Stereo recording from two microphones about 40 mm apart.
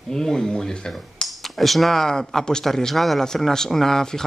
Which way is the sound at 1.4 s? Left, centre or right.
Centre.